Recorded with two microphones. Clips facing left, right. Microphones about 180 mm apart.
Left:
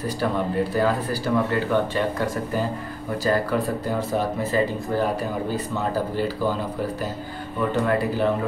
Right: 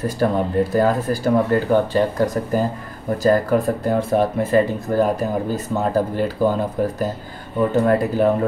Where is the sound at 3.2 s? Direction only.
45° right (ahead or behind).